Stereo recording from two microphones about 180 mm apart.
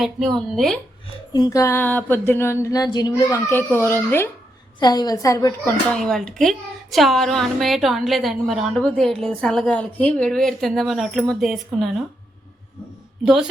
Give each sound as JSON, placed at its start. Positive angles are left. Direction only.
{"t": 0.0, "sound": "a woman's voice", "side_deg": 0}
{"t": 1.3, "sound": "a sound", "side_deg": 20}
{"t": 4.8, "sound": "a woman's voice", "side_deg": 20}
{"t": 5.9, "sound": "a woman's voice", "side_deg": 5}